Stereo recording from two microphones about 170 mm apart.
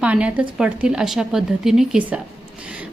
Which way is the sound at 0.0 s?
5° right (ahead or behind).